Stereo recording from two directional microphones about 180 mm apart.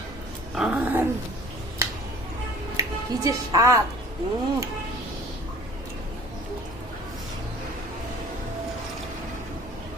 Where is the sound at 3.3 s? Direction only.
15° right (ahead or behind).